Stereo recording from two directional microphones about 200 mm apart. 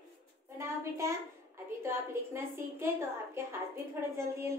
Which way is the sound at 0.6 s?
15° right (ahead or behind).